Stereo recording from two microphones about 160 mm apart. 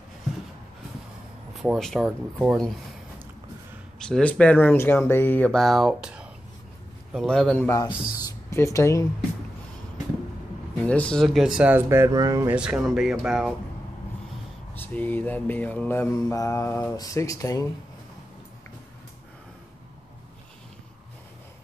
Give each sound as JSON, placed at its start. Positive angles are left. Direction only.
{"t": 1.5, "sound": "speech", "side_deg": 0}
{"t": 4.0, "sound": "mantra", "side_deg": 5}
{"t": 7.1, "sound": "speech", "side_deg": 0}
{"t": 7.8, "sound": "speech", "side_deg": 25}
{"t": 10.9, "sound": "speech", "side_deg": 5}
{"t": 12.5, "sound": "speech", "side_deg": -5}
{"t": 14.8, "sound": "mantra", "side_deg": 10}